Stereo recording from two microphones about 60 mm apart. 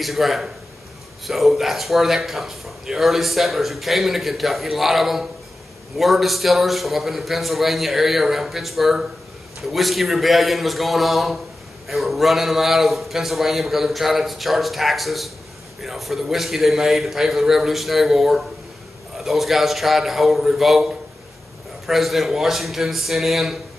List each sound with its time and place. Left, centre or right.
0.0 s a man's voice: centre